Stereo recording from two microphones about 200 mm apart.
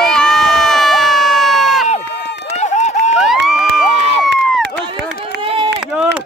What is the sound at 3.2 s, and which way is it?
Crowd, centre (ahead or behind).